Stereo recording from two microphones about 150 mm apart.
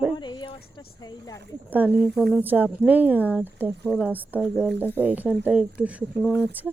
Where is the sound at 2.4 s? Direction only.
10° right (ahead or behind).